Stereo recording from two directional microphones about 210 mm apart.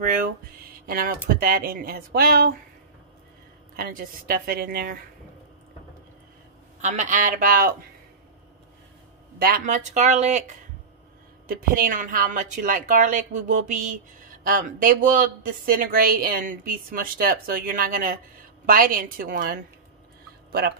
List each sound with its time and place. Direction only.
0.7 s speech: 45° right (ahead or behind)
3.7 s speech: 45° right (ahead or behind)
6.8 s a woman's voice: 35° right (ahead or behind)
9.4 s a woman's voice: 40° right (ahead or behind)
11.4 s a woman's voice: 45° right (ahead or behind)